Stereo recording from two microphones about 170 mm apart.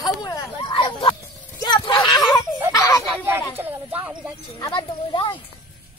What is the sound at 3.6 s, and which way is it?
Speech, 10° right (ahead or behind).